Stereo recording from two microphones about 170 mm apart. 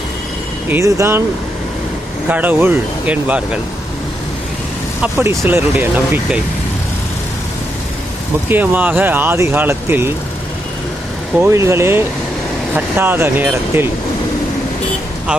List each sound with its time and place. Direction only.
0.7 s speech: 20° right (ahead or behind)
2.3 s speech: 10° right (ahead or behind)
5.0 s speech: 15° right (ahead or behind)
8.4 s speech: 10° right (ahead or behind)
11.3 s speech: 15° right (ahead or behind)